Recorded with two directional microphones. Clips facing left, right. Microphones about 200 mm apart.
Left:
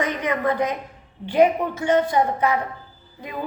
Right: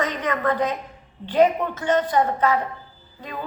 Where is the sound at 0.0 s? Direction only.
10° left (ahead or behind).